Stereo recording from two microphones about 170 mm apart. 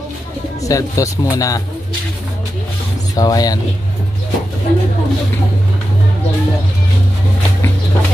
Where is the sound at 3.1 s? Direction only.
20° left (ahead or behind).